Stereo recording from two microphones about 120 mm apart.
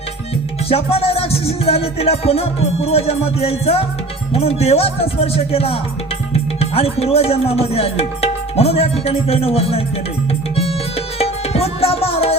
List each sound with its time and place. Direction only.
0.7 s music: 55° left (ahead or behind)
10.5 s tabla: 55° left (ahead or behind)